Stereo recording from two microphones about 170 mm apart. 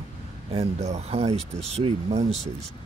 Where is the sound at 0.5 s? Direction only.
40° right (ahead or behind).